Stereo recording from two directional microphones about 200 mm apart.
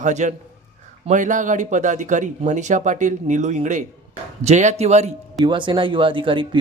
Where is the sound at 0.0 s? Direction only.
35° right (ahead or behind).